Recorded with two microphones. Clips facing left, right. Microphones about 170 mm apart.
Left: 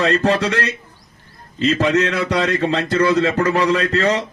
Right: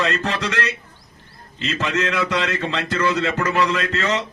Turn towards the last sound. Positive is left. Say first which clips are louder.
# left 5 dB
turn(degrees=40)  # may be behind; listen again after turning